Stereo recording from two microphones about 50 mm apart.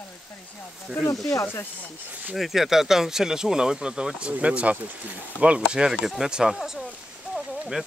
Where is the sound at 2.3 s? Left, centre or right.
Centre.